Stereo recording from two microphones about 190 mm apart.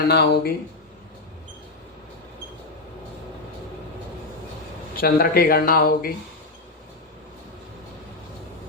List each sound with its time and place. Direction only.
0.1 s speech: 60° left (ahead or behind)
4.9 s speech: 50° left (ahead or behind)